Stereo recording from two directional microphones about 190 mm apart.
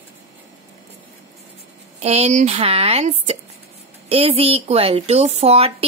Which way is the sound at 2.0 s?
35° right (ahead or behind).